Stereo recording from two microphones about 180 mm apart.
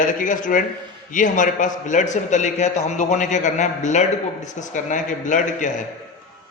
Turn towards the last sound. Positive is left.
turn(degrees=45)  # may be behind; listen again after turning